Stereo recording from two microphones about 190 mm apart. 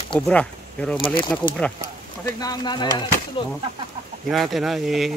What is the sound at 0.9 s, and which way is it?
Speech, 25° left (ahead or behind).